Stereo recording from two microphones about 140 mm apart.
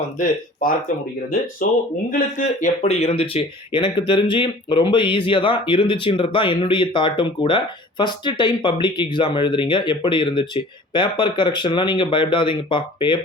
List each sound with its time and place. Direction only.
0.6 s speech: 80° left; by 13.1 s 35° left (ahead or behind)